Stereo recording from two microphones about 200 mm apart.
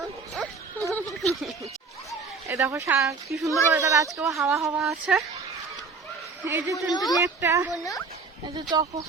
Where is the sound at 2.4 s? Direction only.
15° right (ahead or behind).